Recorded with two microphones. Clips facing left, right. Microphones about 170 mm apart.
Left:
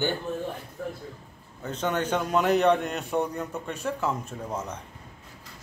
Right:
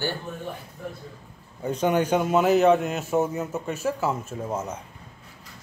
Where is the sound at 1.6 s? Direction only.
10° right (ahead or behind).